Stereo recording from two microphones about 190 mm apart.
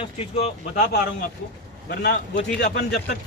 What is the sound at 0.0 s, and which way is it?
Speech, 30° left (ahead or behind).